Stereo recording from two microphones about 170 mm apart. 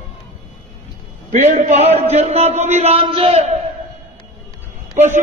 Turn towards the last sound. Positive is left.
turn(degrees=-45)  # may be behind; listen again after turning